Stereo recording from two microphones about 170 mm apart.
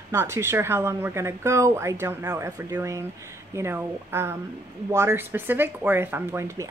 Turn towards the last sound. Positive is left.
turn(degrees=-15)  # may be behind; listen again after turning